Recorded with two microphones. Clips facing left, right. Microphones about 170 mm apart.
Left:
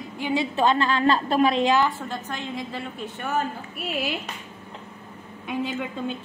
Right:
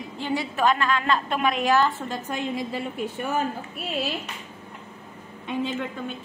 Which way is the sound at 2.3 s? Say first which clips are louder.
Right 3 dB; 10° right (ahead or behind).